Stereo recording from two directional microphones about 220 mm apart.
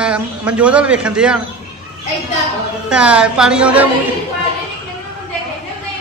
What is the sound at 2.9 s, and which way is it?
A man's voice, 5° right (ahead or behind).